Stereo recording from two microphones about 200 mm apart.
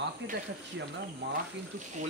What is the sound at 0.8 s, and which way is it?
Speech, 60° right (ahead or behind).